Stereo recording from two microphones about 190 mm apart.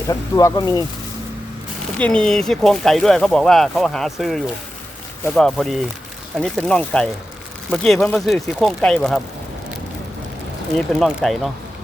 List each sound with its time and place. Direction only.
0.1 s speech: 20° left (ahead or behind)
2.0 s speech: 5° left (ahead or behind)
10.8 s speech: centre (ahead or behind)